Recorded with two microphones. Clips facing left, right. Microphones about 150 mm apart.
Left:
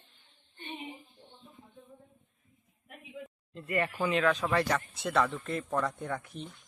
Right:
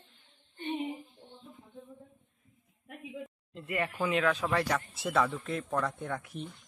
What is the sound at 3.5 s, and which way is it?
Speech, 10° right (ahead or behind).